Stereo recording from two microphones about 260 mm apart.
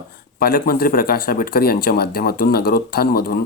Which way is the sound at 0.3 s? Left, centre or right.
Left.